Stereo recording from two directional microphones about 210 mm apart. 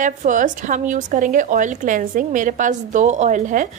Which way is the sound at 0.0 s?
40° right (ahead or behind).